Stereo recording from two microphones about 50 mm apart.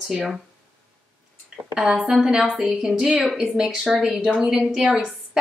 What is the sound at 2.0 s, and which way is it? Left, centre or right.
A woman's voice, centre.